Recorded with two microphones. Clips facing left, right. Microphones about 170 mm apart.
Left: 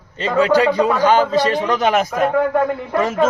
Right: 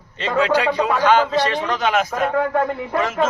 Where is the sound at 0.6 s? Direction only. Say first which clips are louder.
Left 4 dB; 40° left (ahead or behind).